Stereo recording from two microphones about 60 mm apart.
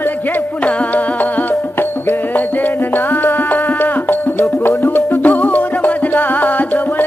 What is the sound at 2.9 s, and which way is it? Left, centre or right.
Music, left.